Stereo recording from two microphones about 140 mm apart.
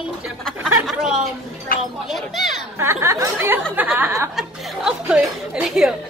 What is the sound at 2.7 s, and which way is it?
Speech, 20° right (ahead or behind).